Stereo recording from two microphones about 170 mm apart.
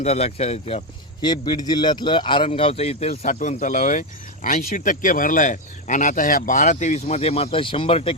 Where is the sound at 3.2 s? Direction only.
45° left (ahead or behind).